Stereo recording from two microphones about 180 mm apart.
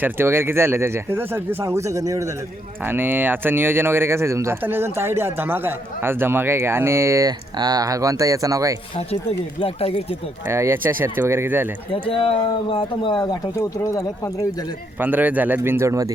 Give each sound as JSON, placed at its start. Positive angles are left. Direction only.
{"t": 0.0, "sound": "speech", "side_deg": -10}
{"t": 9.6, "sound": "speech", "side_deg": 30}
{"t": 10.5, "sound": "speech", "side_deg": -15}
{"t": 11.9, "sound": "speech", "side_deg": 30}
{"t": 15.0, "sound": "speech", "side_deg": -10}